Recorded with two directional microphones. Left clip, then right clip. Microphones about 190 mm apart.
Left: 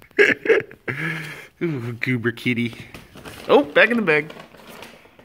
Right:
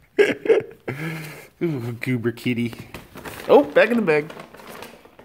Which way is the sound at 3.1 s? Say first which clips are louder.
Right 5 dB; 25° right (ahead or behind).